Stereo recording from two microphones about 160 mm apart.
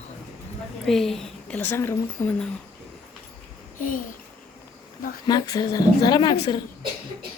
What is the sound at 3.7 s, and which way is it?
Speech, 55° left (ahead or behind).